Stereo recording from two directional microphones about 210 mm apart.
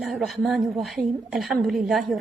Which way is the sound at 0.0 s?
Centre (ahead or behind).